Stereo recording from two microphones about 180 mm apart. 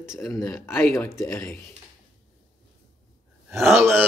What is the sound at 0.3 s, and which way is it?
Speech, 15° left (ahead or behind).